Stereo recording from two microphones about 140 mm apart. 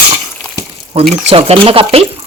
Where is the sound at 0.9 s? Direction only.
45° right (ahead or behind).